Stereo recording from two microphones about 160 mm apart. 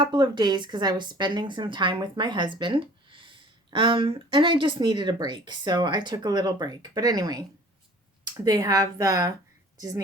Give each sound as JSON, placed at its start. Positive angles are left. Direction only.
{"t": 0.0, "sound": "a woman's voice", "side_deg": -30}